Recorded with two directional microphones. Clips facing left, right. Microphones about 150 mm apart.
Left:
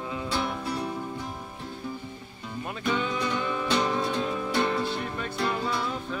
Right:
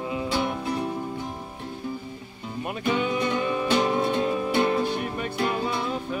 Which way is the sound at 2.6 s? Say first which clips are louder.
Right 3 dB; 15° right (ahead or behind).